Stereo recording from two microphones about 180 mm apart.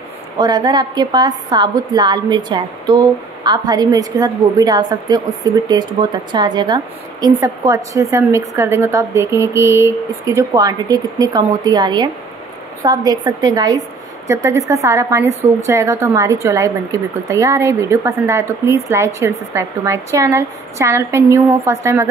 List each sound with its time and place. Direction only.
0.4 s a woman's voice: 20° right (ahead or behind)